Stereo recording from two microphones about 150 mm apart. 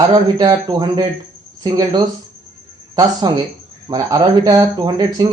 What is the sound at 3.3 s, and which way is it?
Speech, 25° right (ahead or behind).